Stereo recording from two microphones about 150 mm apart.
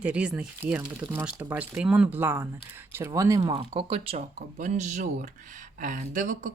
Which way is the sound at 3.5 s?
35° right (ahead or behind).